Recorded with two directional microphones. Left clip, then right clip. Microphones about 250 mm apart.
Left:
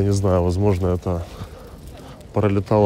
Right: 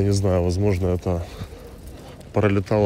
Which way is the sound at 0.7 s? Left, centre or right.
Centre.